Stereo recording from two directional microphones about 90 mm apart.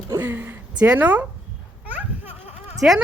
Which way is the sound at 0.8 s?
15° right (ahead or behind).